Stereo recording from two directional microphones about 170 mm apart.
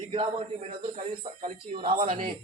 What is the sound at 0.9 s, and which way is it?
Speech, 45° right (ahead or behind).